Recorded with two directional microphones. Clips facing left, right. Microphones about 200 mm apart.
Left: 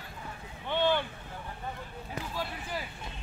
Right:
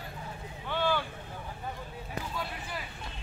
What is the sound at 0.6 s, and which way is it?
Boat, 20° left (ahead or behind).